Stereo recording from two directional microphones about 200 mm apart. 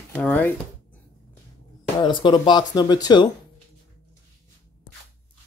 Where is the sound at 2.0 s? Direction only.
25° left (ahead or behind).